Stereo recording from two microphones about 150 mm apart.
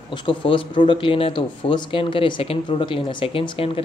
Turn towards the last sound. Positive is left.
turn(degrees=35)  # may be behind; listen again after turning